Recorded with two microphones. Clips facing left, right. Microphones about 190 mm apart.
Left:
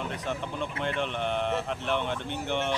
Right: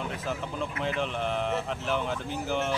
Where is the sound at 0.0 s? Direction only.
Centre (ahead or behind).